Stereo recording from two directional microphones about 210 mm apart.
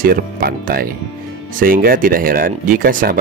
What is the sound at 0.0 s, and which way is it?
A man's voice, 45° right (ahead or behind).